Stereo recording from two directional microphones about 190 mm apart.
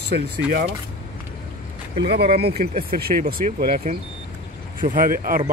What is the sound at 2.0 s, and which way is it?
Speech, 60° right (ahead or behind).